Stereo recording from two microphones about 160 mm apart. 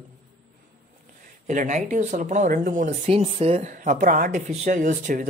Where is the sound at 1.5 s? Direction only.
50° right (ahead or behind).